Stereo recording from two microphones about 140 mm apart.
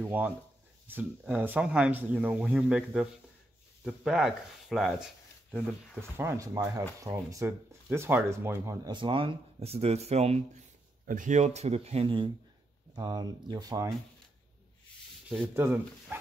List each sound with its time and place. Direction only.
0.0 s a sound: 10° right (ahead or behind)
0.8 s speech: 15° right (ahead or behind)
5.9 s speech: 20° right (ahead or behind)
8.8 s speech: 35° right (ahead or behind)
11.1 s speech: 65° right (ahead or behind); by 12.3 s 40° right (ahead or behind)
12.9 s speech: 30° right (ahead or behind)
15.5 s speech: 15° right (ahead or behind)